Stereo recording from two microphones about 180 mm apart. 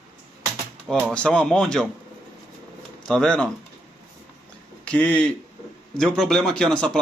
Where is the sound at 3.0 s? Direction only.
5° left (ahead or behind).